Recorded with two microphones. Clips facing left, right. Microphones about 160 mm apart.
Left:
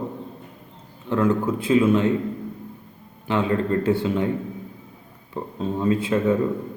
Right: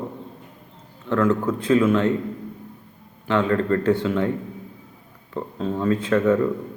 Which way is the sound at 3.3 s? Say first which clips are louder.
Right 2 dB; 15° left (ahead or behind).